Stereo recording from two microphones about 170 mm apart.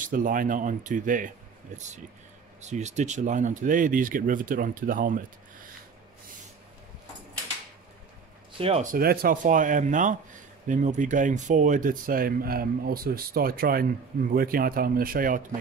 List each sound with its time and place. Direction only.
0.0 s speech: 50° right (ahead or behind)
2.6 s speech: 45° right (ahead or behind)
8.5 s speech: 35° right (ahead or behind)
8.9 s speech: 60° right (ahead or behind)